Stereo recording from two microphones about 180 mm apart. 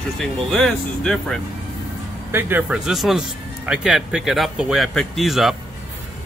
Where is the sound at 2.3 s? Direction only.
10° right (ahead or behind).